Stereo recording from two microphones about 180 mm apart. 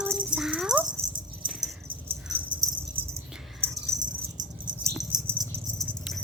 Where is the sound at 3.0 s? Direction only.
30° right (ahead or behind).